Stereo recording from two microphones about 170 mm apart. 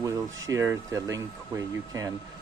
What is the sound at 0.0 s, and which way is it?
Speech, 20° right (ahead or behind).